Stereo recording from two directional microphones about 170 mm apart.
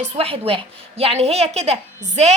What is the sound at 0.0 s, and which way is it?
A woman's voice, 35° right (ahead or behind).